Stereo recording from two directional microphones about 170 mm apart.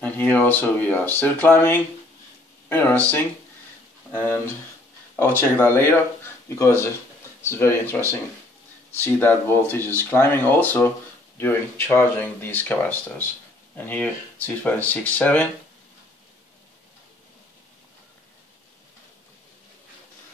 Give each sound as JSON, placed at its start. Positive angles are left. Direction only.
{"t": 0.0, "sound": "speech", "side_deg": 10}